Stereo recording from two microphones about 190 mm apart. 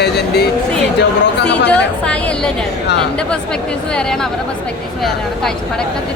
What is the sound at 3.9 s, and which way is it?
Speech, 5° left (ahead or behind).